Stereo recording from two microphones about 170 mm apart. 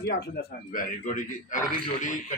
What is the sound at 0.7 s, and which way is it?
Speech, 50° left (ahead or behind).